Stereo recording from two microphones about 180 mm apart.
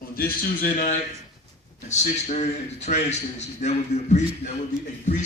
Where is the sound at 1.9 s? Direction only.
40° left (ahead or behind).